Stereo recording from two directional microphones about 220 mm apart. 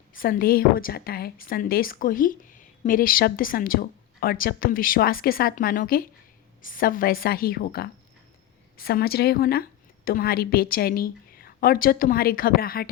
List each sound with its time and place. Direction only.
0.1 s a woman's voice: 40° left (ahead or behind)